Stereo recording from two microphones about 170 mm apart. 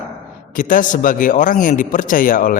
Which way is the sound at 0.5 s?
50° left (ahead or behind).